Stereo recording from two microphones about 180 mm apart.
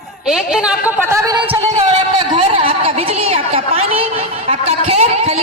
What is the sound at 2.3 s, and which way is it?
A man's voice, 30° right (ahead or behind).